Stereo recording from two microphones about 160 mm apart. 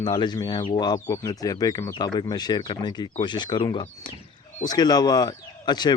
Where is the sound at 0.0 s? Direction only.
25° left (ahead or behind).